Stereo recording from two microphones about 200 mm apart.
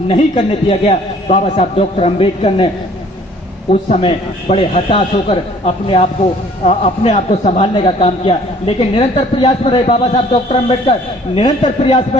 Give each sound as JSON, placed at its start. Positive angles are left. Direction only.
{"t": 0.1, "sound": "a man's voice", "side_deg": 30}
{"t": 3.7, "sound": "a man's voice", "side_deg": 35}